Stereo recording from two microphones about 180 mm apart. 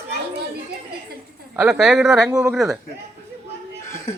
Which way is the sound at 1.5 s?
5° right (ahead or behind).